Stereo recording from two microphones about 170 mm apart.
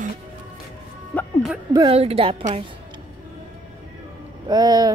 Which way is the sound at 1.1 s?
10° left (ahead or behind).